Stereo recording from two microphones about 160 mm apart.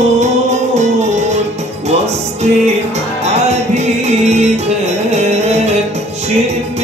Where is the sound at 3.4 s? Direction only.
45° right (ahead or behind).